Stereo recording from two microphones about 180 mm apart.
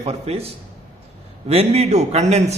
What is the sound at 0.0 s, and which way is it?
A man's voice, 35° right (ahead or behind).